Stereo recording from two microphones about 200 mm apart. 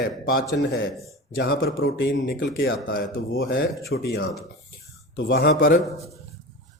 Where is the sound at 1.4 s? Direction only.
50° left (ahead or behind).